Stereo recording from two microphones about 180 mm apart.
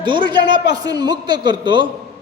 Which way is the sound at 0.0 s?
25° right (ahead or behind).